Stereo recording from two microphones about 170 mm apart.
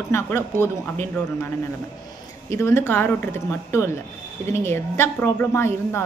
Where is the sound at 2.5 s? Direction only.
15° left (ahead or behind).